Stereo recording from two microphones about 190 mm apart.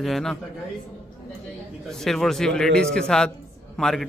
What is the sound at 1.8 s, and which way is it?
A man's voice, centre (ahead or behind).